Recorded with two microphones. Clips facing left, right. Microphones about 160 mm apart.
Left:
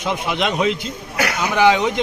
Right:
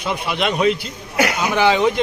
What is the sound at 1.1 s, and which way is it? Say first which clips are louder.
Speech: right 3 dB; 20° right (ahead or behind).